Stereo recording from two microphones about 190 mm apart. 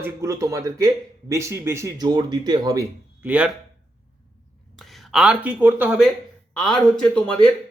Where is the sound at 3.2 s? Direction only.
5° right (ahead or behind).